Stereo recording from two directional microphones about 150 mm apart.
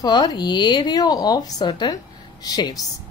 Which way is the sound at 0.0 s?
25° left (ahead or behind).